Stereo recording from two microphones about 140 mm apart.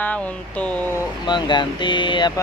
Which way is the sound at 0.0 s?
10° left (ahead or behind).